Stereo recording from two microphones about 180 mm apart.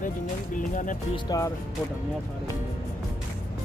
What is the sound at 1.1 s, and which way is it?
Speech, 20° left (ahead or behind).